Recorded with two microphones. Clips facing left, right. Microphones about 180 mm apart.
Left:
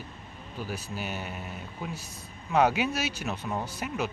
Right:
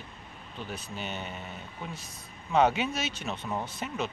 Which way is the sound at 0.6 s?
5° left (ahead or behind).